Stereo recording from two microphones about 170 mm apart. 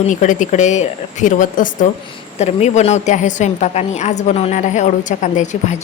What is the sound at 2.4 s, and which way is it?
Speech, 40° left (ahead or behind).